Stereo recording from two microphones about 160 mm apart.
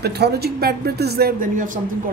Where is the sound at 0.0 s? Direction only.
90° right; by 1.8 s 55° right (ahead or behind).